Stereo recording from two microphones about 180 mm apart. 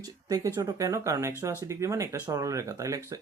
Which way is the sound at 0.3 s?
20° right (ahead or behind).